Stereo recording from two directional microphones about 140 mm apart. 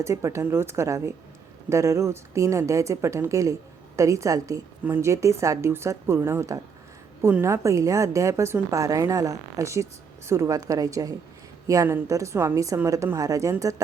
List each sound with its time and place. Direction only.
0.0 s a woman's voice: 20° right (ahead or behind)